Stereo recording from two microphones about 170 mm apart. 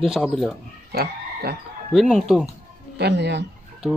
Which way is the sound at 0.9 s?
70° right (ahead or behind).